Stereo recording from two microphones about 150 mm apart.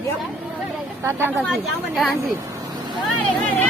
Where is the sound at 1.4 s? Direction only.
Centre (ahead or behind).